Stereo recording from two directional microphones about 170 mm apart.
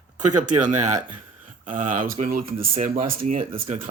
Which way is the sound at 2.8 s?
55° right (ahead or behind).